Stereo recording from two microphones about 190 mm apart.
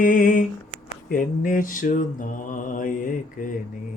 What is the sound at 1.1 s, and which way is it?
Mantra, 45° left (ahead or behind).